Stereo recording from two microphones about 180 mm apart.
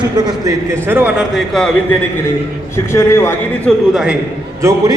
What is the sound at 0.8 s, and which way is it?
A man's voice, 10° right (ahead or behind).